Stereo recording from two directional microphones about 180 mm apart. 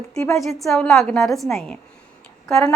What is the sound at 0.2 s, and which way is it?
Speech, 15° left (ahead or behind).